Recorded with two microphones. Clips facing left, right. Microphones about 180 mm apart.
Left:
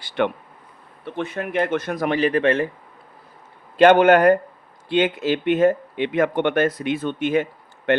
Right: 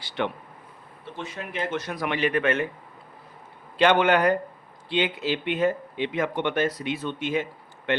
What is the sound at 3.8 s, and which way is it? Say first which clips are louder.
Speech: left 7 dB; 45° left (ahead or behind).